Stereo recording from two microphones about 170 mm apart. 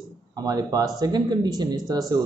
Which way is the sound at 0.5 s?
20° right (ahead or behind).